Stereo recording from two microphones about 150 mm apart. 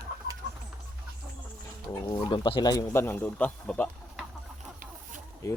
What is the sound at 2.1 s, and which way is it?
Speech, 30° left (ahead or behind).